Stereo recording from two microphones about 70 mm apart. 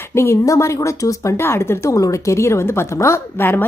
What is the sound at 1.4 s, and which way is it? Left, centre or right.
Speech, left.